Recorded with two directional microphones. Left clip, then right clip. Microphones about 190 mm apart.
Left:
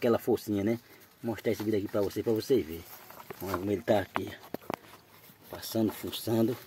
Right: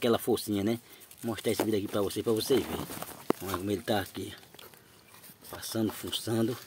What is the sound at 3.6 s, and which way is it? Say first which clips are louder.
Speech: left 4 dB; 10° right (ahead or behind).